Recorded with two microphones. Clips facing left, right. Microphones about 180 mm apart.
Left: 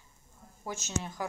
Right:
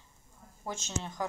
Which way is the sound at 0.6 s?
10° left (ahead or behind).